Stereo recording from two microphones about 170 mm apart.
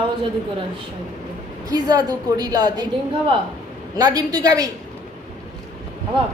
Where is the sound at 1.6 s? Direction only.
20° right (ahead or behind).